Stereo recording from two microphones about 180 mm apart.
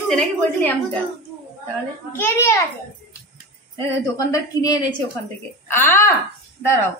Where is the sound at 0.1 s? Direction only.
10° left (ahead or behind).